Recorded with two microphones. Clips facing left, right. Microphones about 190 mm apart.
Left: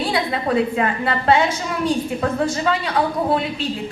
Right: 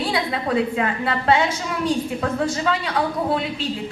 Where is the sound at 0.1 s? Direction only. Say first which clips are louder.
Left 2 dB; 50° left (ahead or behind).